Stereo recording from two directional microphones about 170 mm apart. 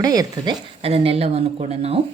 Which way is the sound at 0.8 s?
35° right (ahead or behind).